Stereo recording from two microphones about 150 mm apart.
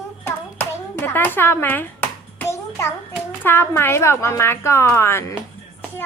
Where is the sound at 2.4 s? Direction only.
15° left (ahead or behind).